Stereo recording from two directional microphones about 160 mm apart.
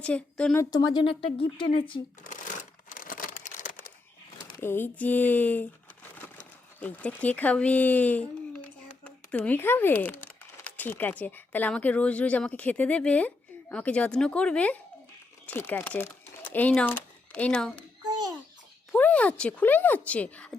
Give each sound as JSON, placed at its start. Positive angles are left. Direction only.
{"t": 0.0, "sound": "a woman's voice", "side_deg": 5}
{"t": 0.6, "sound": "speech", "side_deg": 25}
{"t": 2.2, "sound": "shuffling cards", "side_deg": 55}
{"t": 3.0, "sound": "a sound", "side_deg": 60}
{"t": 4.4, "sound": "a woman's voice", "side_deg": 15}
{"t": 18.9, "sound": "speech", "side_deg": 10}